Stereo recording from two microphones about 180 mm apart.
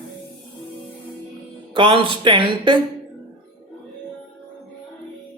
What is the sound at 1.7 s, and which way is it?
Speech, 30° right (ahead or behind).